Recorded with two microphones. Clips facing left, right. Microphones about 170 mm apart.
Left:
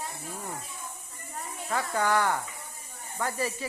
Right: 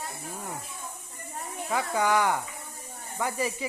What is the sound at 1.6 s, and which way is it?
Speech, 15° right (ahead or behind).